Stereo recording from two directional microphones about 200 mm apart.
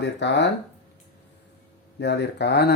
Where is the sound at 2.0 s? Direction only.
60° left (ahead or behind).